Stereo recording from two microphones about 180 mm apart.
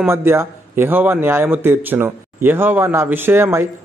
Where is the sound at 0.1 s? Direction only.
15° right (ahead or behind).